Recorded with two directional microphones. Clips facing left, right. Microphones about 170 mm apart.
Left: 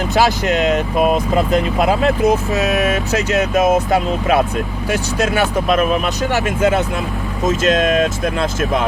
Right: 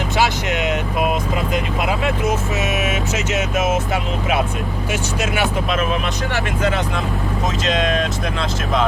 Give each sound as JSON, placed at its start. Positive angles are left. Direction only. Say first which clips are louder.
{"t": 0.2, "sound": "speech", "louder": "left 5 dB", "side_deg": 35}
{"t": 2.2, "sound": "speech", "louder": "left 5 dB", "side_deg": 35}